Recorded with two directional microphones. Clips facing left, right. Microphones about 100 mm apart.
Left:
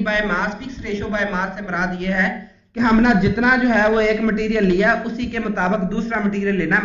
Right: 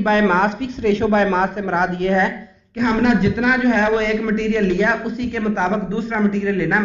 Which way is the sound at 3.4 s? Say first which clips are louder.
Left 1 dB; 10° left (ahead or behind).